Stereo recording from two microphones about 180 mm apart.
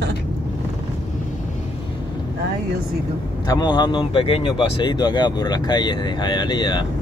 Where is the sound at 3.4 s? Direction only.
20° left (ahead or behind).